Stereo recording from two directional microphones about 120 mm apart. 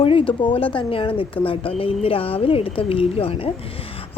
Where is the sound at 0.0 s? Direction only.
50° left (ahead or behind).